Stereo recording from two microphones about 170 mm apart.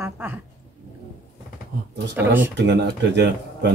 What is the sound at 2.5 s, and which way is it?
Speech, 90° right.